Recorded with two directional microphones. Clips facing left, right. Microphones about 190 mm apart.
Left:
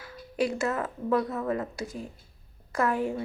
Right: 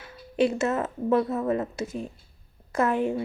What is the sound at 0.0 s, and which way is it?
A woman's voice, 25° right (ahead or behind).